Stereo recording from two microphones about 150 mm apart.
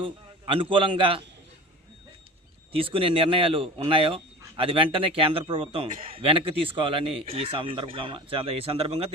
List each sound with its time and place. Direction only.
0.0 s a man's voice: 35° right (ahead or behind)
2.7 s speech: 35° right (ahead or behind)
5.9 s a man's voice: 60° right (ahead or behind)
6.1 s speech: 35° right (ahead or behind)